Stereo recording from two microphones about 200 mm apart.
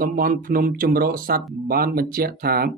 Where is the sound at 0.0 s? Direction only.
45° right (ahead or behind).